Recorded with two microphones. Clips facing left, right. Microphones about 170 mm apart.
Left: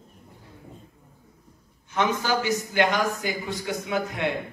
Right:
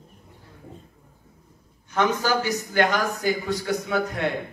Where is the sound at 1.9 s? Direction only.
40° right (ahead or behind).